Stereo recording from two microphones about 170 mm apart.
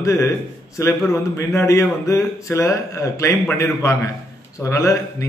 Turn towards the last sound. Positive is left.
turn(degrees=20)  # may be behind; listen again after turning